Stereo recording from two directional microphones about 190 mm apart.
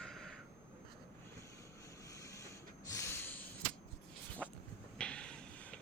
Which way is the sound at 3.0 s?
10° left (ahead or behind).